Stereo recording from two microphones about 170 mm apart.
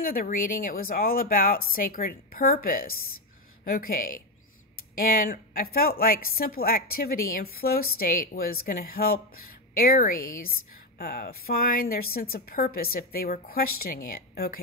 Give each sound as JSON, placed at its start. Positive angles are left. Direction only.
{"t": 0.0, "sound": "a woman's voice", "side_deg": 55}